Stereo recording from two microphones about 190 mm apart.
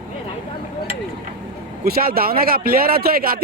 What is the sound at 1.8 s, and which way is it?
Speech, 50° right (ahead or behind).